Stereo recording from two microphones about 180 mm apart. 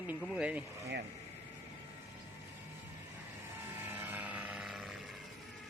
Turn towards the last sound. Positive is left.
turn(degrees=0)  # may be behind; listen again after turning